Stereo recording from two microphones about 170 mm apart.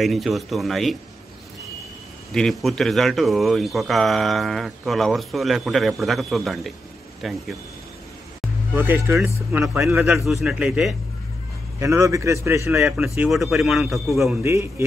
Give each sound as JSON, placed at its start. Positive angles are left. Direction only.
{"t": 0.0, "sound": "speech", "side_deg": 0}
{"t": 2.3, "sound": "speech", "side_deg": 5}
{"t": 8.7, "sound": "a man's voice", "side_deg": -10}
{"t": 9.8, "sound": "speech", "side_deg": -5}
{"t": 11.8, "sound": "a man's voice", "side_deg": -15}
{"t": 12.8, "sound": "speech", "side_deg": -5}
{"t": 14.4, "sound": "a man's voice", "side_deg": -15}